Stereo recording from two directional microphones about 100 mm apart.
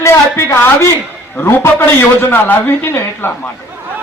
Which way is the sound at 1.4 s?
25° left (ahead or behind).